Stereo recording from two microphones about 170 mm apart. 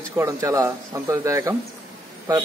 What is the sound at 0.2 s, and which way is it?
A man's voice, 20° right (ahead or behind).